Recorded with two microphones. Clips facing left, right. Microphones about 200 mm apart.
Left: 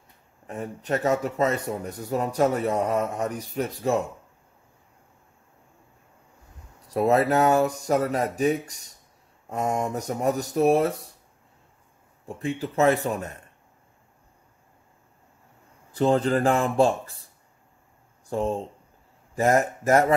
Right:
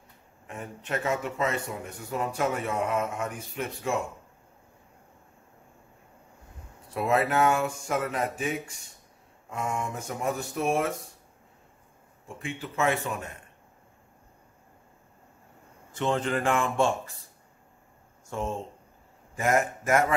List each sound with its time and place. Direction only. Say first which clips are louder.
0.5 s speech: left 6 dB; 35° left (ahead or behind)
6.9 s speech: left 5 dB; 40° left (ahead or behind)
12.4 s speech: left 7 dB; 40° left (ahead or behind)
15.9 s speech: left 6 dB; 35° left (ahead or behind)
18.3 s speech: left 6 dB; 35° left (ahead or behind)